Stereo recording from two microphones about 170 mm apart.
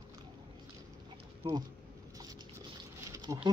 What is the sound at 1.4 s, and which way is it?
Speech, 30° right (ahead or behind).